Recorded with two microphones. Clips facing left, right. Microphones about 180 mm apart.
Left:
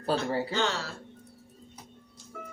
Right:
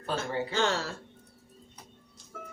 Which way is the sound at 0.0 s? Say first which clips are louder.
Left 4 dB; 35° left (ahead or behind).